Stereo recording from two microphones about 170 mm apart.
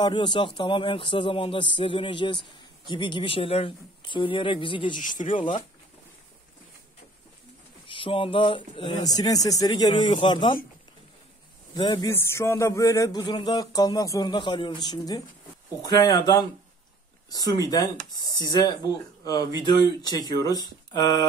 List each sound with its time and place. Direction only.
0.0 s speech: 25° left (ahead or behind)
4.9 s speech: 50° left (ahead or behind)
5.3 s speech: 30° left (ahead or behind)
7.8 s speech: 30° left (ahead or behind)
11.7 s speech: 25° left (ahead or behind)
12.1 s speech: 15° left (ahead or behind)